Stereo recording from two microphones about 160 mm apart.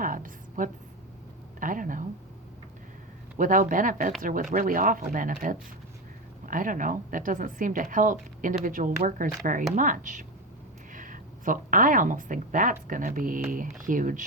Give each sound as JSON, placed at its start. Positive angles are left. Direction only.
{"t": 0.0, "sound": "a sound", "side_deg": -55}
{"t": 1.5, "sound": "a woman's voice", "side_deg": -55}
{"t": 3.3, "sound": "a woman's voice", "side_deg": -55}